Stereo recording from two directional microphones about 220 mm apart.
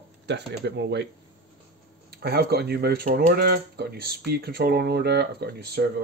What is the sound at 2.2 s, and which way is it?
Speech, 45° right (ahead or behind).